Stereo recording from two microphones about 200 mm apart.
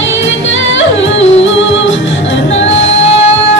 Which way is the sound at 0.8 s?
70° left (ahead or behind).